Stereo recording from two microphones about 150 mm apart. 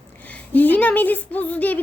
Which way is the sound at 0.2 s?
10° left (ahead or behind).